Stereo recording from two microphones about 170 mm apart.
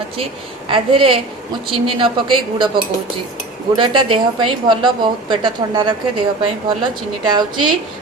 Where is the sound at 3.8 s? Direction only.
30° right (ahead or behind).